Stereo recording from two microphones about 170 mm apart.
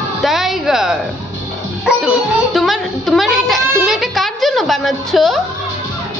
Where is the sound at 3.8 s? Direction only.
Centre (ahead or behind).